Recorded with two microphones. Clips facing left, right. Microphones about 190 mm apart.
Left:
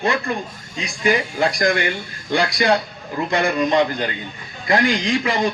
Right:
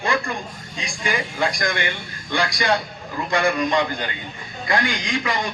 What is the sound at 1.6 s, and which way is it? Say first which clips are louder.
A man's voice: left 6 dB; 30° left (ahead or behind).